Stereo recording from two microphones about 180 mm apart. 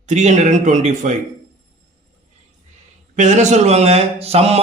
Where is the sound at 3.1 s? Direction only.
40° right (ahead or behind).